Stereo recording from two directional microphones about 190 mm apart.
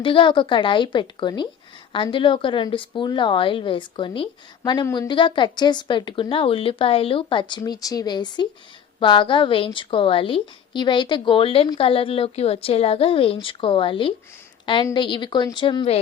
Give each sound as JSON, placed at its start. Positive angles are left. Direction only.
{"t": 0.0, "sound": "a woman's voice", "side_deg": 25}